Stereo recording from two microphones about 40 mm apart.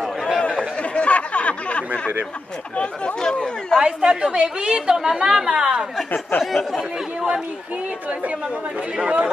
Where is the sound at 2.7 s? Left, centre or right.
Left.